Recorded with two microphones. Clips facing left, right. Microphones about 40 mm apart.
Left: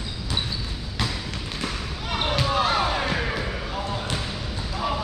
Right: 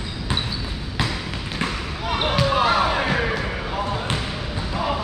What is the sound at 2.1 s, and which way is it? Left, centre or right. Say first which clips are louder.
Basketball bounce: right 4 dB; centre.